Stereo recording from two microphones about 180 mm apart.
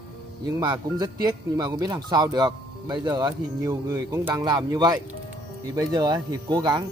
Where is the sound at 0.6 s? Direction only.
20° right (ahead or behind).